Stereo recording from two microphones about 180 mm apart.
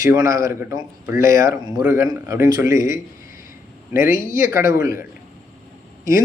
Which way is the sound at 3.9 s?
50° left (ahead or behind).